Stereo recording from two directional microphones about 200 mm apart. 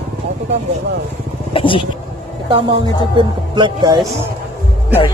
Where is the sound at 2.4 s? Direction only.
25° right (ahead or behind).